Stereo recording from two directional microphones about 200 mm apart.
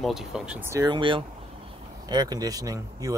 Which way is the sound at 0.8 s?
25° right (ahead or behind).